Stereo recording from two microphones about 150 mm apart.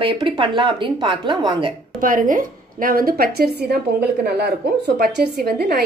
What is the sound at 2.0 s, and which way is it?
A woman's voice, 60° right (ahead or behind).